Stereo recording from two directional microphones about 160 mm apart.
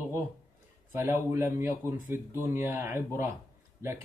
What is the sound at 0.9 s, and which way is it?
Speech, 15° right (ahead or behind).